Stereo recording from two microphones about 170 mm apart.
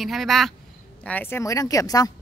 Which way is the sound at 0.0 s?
Centre (ahead or behind).